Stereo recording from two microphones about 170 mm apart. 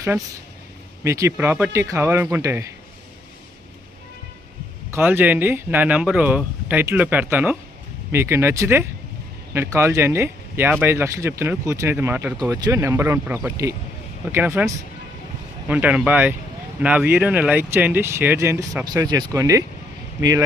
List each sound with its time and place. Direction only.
1.0 s speech: 15° right (ahead or behind)
4.9 s speech: 15° right (ahead or behind)